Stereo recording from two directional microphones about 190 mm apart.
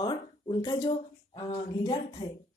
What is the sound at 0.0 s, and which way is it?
Speech, 25° left (ahead or behind).